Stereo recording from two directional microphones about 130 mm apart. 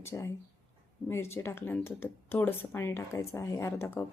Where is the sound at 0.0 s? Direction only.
20° left (ahead or behind).